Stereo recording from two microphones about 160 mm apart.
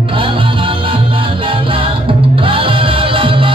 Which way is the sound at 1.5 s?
35° right (ahead or behind).